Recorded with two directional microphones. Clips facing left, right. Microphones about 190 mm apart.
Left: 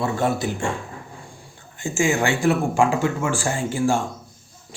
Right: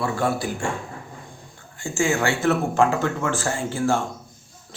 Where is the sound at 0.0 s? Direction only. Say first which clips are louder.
Left 1 dB; 20° left (ahead or behind).